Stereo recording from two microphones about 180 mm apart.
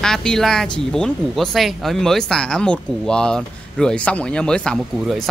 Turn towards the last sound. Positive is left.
turn(degrees=5)  # may be behind; listen again after turning